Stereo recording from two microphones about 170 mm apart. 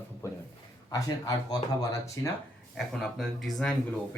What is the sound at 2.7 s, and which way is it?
Speech, centre (ahead or behind).